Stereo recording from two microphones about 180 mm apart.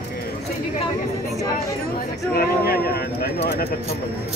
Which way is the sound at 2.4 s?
55° left (ahead or behind).